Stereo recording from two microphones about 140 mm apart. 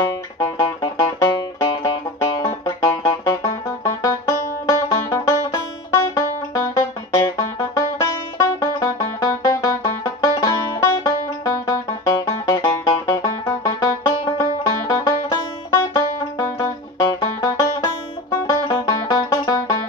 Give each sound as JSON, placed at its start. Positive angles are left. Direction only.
{"t": 0.4, "sound": "music", "side_deg": 25}
{"t": 7.2, "sound": "banjo", "side_deg": 25}
{"t": 16.5, "sound": "music", "side_deg": 25}